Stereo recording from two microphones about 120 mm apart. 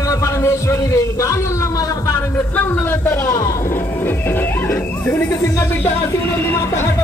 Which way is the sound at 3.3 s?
25° left (ahead or behind).